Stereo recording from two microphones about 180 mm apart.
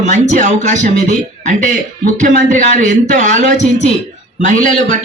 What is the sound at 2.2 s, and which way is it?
A man's voice, 45° right (ahead or behind).